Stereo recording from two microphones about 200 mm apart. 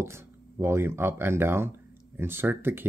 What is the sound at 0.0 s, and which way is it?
Speech, 15° right (ahead or behind).